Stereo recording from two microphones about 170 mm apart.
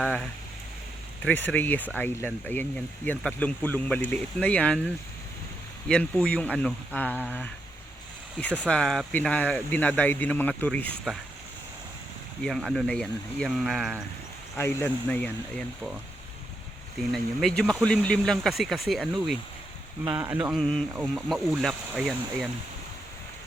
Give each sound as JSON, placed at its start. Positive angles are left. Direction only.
{"t": 0.0, "sound": "speech", "side_deg": 5}
{"t": 5.9, "sound": "speech", "side_deg": 5}
{"t": 12.5, "sound": "speech", "side_deg": 0}
{"t": 14.5, "sound": "speech", "side_deg": 15}
{"t": 17.1, "sound": "speech", "side_deg": 0}
{"t": 20.6, "sound": "speech", "side_deg": 0}